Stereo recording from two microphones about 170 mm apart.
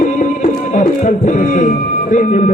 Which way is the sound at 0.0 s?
45° left (ahead or behind).